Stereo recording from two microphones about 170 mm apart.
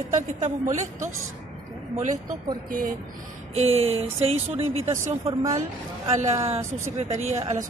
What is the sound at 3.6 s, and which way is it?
Speech, 40° right (ahead or behind).